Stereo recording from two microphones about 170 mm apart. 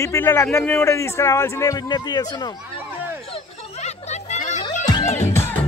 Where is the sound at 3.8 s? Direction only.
40° left (ahead or behind).